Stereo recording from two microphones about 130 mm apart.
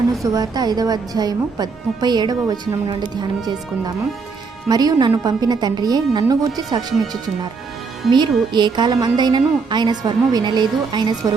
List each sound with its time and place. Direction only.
0.2 s a woman's voice: 30° right (ahead or behind)